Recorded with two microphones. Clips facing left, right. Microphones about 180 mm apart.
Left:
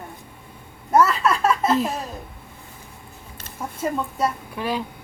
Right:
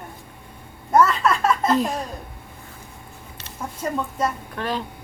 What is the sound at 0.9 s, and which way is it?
A woman's voice, 10° left (ahead or behind).